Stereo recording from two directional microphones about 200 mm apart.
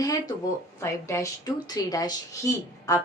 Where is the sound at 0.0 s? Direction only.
20° left (ahead or behind).